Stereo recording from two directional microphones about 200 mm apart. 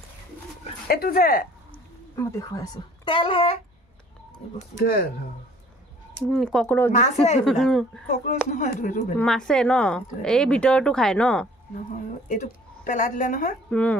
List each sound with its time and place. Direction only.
0.8 s speech: 50° left (ahead or behind)
2.1 s speech: 15° left (ahead or behind)
4.7 s speech: 45° left (ahead or behind)
6.1 s speech: 5° left (ahead or behind)
6.9 s a woman's voice: 35° left (ahead or behind)
7.4 s speech: centre (ahead or behind)
8.5 s a woman's voice: 40° left (ahead or behind)
9.2 s speech: 5° left (ahead or behind)
12.3 s a woman's voice: 40° left (ahead or behind)
13.7 s speech: 5° left (ahead or behind)